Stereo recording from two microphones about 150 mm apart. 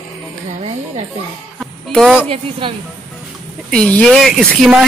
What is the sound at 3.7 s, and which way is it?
Speech, 5° left (ahead or behind).